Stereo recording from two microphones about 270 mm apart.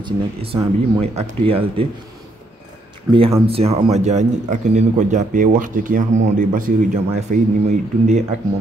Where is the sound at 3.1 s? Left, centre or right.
Centre.